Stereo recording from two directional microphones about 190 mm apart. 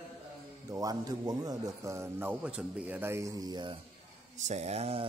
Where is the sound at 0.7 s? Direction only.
20° right (ahead or behind).